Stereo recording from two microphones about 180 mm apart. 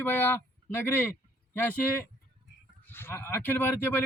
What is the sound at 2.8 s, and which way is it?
Speech, 10° left (ahead or behind).